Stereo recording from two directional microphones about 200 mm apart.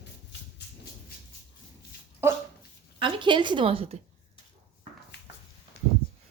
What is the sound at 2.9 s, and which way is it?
A woman's voice, 25° right (ahead or behind).